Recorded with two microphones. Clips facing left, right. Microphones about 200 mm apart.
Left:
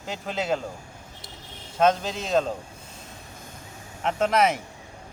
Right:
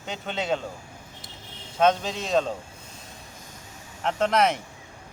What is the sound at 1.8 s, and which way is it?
Speech, centre (ahead or behind).